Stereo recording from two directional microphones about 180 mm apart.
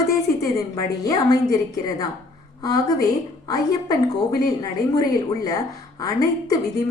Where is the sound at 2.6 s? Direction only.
20° left (ahead or behind).